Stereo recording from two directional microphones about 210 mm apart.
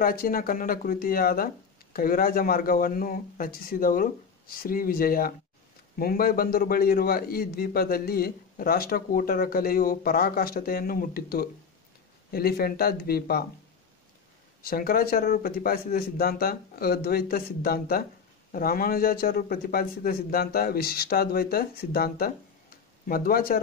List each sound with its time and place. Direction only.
0.0 s a man's voice: 45° left (ahead or behind)
14.6 s a man's voice: 45° left (ahead or behind)